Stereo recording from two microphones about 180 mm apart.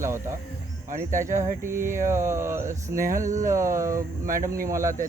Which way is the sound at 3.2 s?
45° right (ahead or behind).